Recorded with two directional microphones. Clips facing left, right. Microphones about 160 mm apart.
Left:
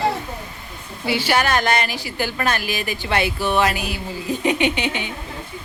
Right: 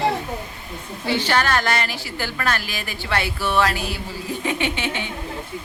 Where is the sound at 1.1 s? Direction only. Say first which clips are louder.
Left 1 dB; 10° left (ahead or behind).